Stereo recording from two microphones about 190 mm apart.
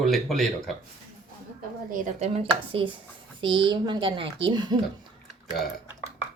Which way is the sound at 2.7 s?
30° right (ahead or behind).